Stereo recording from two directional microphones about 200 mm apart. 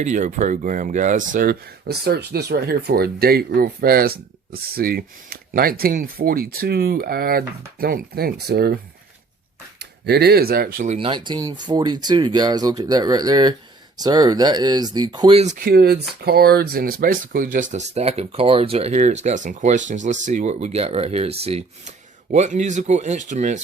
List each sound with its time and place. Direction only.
0.0 s speech: 40° right (ahead or behind)
10.8 s speech: 30° right (ahead or behind)